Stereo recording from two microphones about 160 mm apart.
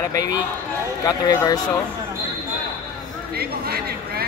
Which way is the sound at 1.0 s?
25° left (ahead or behind).